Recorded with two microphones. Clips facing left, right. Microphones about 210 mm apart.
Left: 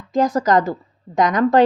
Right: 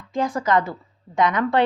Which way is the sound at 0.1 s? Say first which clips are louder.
Left 5 dB; 40° left (ahead or behind).